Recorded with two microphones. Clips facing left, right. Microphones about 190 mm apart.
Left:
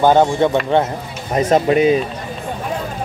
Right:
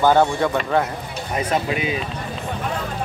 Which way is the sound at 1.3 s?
40° left (ahead or behind).